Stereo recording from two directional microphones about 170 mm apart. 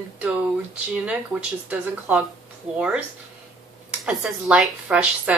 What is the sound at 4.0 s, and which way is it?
Speech, centre (ahead or behind).